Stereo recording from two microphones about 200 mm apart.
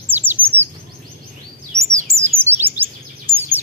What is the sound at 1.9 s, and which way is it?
Bird, 40° right (ahead or behind).